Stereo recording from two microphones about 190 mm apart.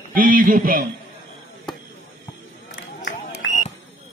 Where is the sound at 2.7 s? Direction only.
70° left (ahead or behind).